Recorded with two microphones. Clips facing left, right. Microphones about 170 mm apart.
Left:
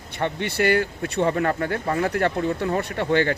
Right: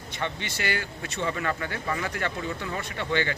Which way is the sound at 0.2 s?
55° left (ahead or behind).